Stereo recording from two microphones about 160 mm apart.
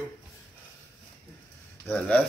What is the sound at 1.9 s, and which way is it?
Speech, 10° left (ahead or behind).